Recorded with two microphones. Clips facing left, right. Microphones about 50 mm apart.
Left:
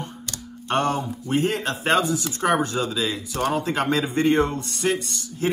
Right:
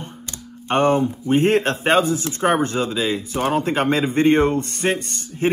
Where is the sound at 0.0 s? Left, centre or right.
Right.